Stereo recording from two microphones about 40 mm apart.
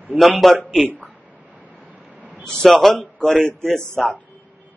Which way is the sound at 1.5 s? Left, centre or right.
Right.